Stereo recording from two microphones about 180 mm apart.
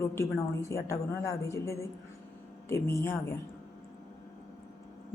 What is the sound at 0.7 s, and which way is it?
A man's voice, 15° left (ahead or behind).